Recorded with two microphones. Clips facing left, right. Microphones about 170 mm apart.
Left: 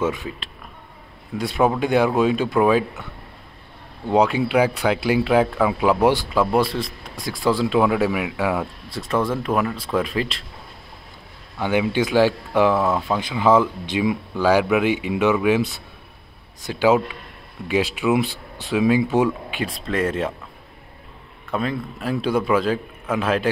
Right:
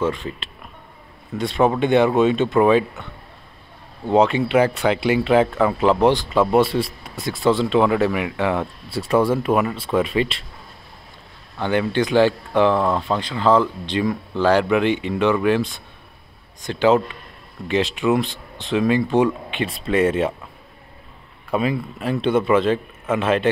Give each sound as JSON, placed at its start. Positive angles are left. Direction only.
{"t": 0.0, "sound": "speech", "side_deg": 10}
{"t": 1.4, "sound": "speech", "side_deg": 0}
{"t": 4.1, "sound": "speech", "side_deg": 0}
{"t": 11.5, "sound": "speech", "side_deg": 10}
{"t": 21.5, "sound": "speech", "side_deg": -10}